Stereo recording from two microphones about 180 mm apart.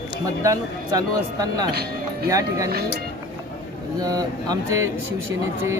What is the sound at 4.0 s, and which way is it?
Speech, 20° right (ahead or behind).